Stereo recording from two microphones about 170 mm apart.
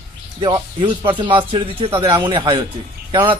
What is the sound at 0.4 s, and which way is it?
A man's voice, 30° right (ahead or behind).